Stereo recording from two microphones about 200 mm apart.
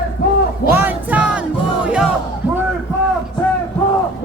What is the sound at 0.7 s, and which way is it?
Music, 5° right (ahead or behind).